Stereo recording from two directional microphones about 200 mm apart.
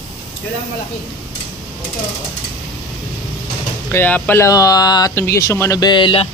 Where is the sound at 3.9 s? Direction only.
10° left (ahead or behind); by 6.3 s 25° left (ahead or behind).